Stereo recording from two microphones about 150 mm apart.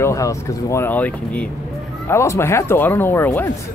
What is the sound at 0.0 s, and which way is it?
Speech, 20° left (ahead or behind).